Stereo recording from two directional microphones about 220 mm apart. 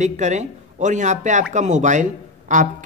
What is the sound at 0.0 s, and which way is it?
Speech, 30° right (ahead or behind).